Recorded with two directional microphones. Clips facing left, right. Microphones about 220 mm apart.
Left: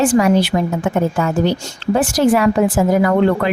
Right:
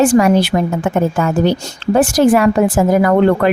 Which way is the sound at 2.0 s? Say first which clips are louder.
Right 3 dB; 45° right (ahead or behind).